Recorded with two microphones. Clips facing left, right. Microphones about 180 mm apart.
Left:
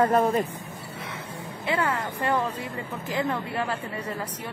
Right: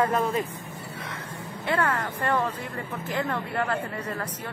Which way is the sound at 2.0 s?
20° left (ahead or behind).